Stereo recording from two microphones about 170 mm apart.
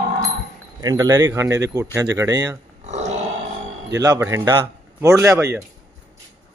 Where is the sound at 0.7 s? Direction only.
20° right (ahead or behind).